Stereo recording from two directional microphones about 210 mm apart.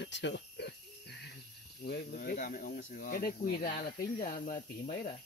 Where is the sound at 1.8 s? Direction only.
45° left (ahead or behind).